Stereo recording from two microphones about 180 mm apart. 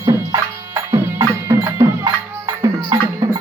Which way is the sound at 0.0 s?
20° right (ahead or behind).